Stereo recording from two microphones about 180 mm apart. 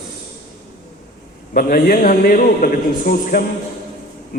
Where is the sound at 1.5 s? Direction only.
55° left (ahead or behind).